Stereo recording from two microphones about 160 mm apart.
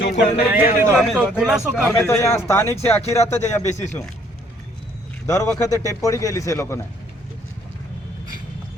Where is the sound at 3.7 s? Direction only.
45° left (ahead or behind).